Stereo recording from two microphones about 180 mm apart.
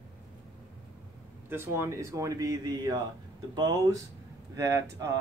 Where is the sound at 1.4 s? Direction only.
15° right (ahead or behind).